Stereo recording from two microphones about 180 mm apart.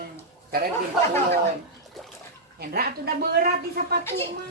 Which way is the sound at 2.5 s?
60° right (ahead or behind).